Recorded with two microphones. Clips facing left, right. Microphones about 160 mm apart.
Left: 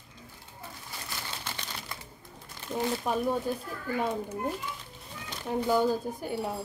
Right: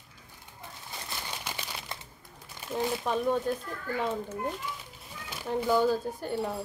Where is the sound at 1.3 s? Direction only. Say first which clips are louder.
Right 1 dB; 15° right (ahead or behind).